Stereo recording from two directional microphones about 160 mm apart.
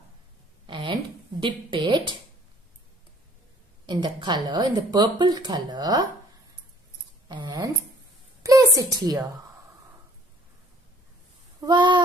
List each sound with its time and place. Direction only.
0.7 s a sound: 30° right (ahead or behind)
1.4 s a woman's voice: 30° right (ahead or behind)
3.8 s speech: 30° right (ahead or behind)
7.2 s speech: 25° right (ahead or behind)
8.4 s a sound: 20° right (ahead or behind)
8.7 s speech: 25° right (ahead or behind)
11.6 s speech: 30° right (ahead or behind)